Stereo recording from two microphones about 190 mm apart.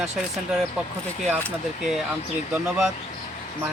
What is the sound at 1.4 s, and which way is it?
Speech, centre (ahead or behind).